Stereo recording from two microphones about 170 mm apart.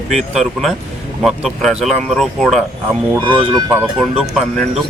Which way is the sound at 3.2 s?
30° right (ahead or behind).